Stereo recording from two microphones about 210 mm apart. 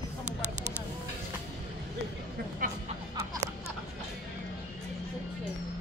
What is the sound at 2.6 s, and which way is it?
Music, 40° right (ahead or behind).